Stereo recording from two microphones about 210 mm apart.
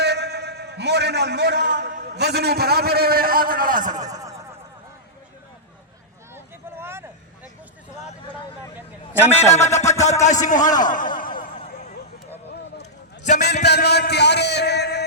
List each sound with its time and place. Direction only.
0.0 s a sound: 55° right (ahead or behind)
2.1 s a man's voice: 50° right (ahead or behind)
3.9 s speech: 15° right (ahead or behind)
6.3 s vehicle: 10° right (ahead or behind)
9.2 s a man's voice: 10° left (ahead or behind)
9.6 s music: 35° left (ahead or behind)
10.2 s a man's voice: 35° left (ahead or behind)
13.3 s a sound: 50° left (ahead or behind)